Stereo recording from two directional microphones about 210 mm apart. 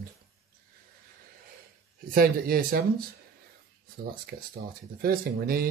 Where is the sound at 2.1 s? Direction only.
45° right (ahead or behind).